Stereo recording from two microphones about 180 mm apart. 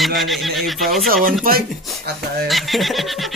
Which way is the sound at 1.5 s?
55° right (ahead or behind).